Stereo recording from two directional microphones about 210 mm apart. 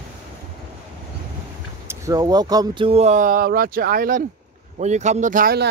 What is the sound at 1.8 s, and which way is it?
Speech, 15° right (ahead or behind).